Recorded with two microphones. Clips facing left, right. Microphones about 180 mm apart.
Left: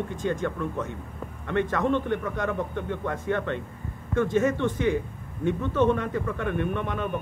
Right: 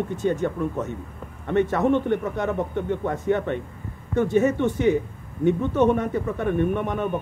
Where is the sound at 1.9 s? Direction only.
20° right (ahead or behind).